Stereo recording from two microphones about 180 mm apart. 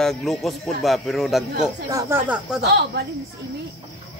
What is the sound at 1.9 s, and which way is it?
Speech, 15° right (ahead or behind).